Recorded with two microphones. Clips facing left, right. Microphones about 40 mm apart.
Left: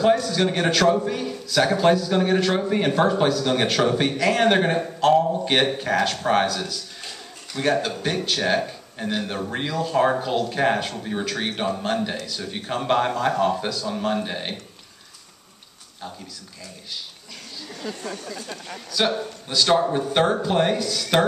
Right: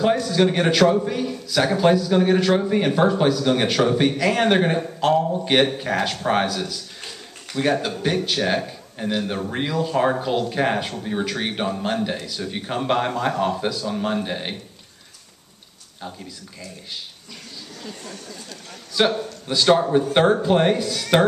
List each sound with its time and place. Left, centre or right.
0.2 s a man's voice: centre
19.4 s a man's voice: centre
19.8 s a man's voice: centre
20.4 s a man's voice: centre